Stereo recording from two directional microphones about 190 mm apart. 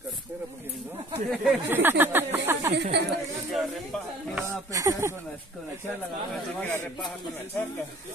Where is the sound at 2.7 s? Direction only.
65° right (ahead or behind).